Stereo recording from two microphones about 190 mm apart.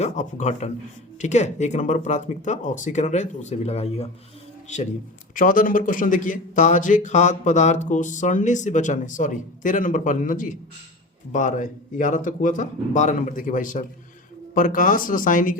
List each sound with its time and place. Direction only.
0.0 s speech: 40° left (ahead or behind)